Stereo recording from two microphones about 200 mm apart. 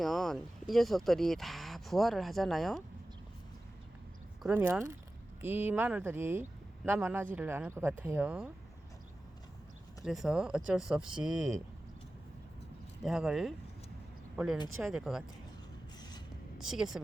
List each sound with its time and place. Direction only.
0.0 s speech: centre (ahead or behind)
4.4 s speech: 10° right (ahead or behind)
10.0 s speech: centre (ahead or behind)
13.0 s speech: centre (ahead or behind)
16.0 s a sound: 20° left (ahead or behind)
16.6 s speech: centre (ahead or behind)